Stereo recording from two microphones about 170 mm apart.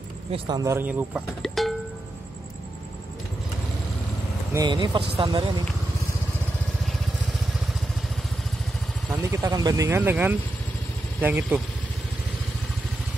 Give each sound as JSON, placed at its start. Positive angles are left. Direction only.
{"t": 0.3, "sound": "speech", "side_deg": -25}
{"t": 4.6, "sound": "speech", "side_deg": -25}
{"t": 9.1, "sound": "speech", "side_deg": -20}